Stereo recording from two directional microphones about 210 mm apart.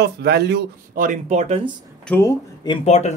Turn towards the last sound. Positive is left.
turn(degrees=30)  # may be behind; listen again after turning